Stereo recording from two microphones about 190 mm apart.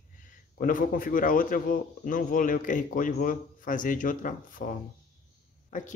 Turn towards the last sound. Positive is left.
turn(degrees=45)  # may be behind; listen again after turning